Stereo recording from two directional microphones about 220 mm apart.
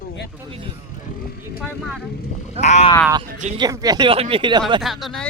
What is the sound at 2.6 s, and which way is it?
Speech, 30° left (ahead or behind).